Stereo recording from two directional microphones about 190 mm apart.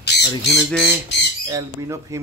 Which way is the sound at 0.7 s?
5° right (ahead or behind).